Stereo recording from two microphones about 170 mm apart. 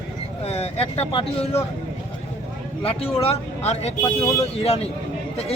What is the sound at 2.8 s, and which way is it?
Speech, 35° left (ahead or behind).